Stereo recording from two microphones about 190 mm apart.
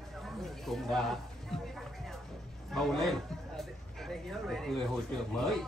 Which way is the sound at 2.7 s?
Centre (ahead or behind).